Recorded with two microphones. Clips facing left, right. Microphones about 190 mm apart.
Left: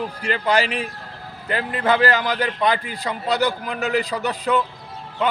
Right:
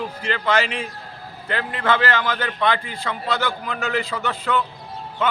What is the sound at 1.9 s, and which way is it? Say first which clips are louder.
Speech: left 2 dB; 40° left (ahead or behind).